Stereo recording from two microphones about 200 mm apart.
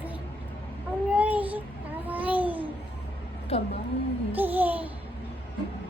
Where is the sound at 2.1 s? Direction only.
10° right (ahead or behind).